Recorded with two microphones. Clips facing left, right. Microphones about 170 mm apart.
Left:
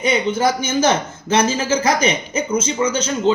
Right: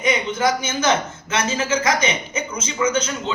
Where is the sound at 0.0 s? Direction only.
30° left (ahead or behind).